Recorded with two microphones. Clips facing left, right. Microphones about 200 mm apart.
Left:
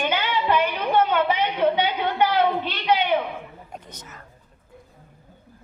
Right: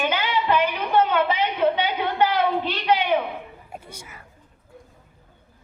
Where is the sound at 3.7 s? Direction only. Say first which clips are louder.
Right 3 dB; 10° right (ahead or behind).